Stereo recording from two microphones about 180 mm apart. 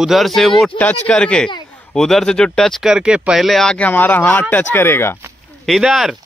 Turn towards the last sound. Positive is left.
turn(degrees=0)  # may be behind; listen again after turning